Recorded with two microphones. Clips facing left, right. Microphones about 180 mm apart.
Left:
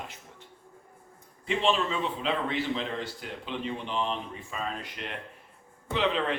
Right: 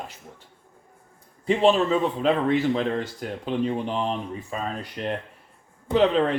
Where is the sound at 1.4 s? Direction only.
40° right (ahead or behind).